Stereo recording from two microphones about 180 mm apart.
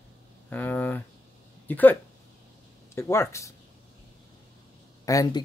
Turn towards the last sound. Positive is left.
turn(degrees=20)  # may be behind; listen again after turning